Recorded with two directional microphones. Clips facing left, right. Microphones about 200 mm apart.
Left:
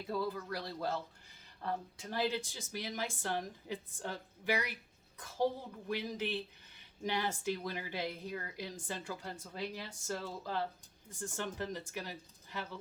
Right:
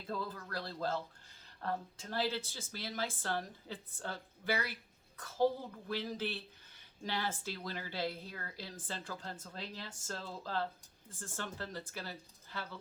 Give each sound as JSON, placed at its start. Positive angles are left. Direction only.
{"t": 0.1, "sound": "speech", "side_deg": 10}